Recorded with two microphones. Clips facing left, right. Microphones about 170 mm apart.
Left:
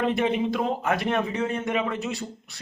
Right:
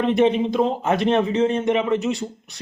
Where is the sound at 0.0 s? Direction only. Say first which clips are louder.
Right 6 dB; 20° right (ahead or behind).